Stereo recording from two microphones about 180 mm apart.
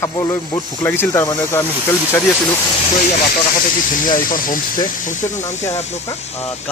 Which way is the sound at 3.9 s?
50° left (ahead or behind).